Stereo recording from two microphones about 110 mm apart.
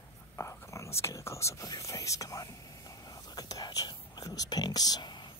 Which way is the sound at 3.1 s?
35° left (ahead or behind).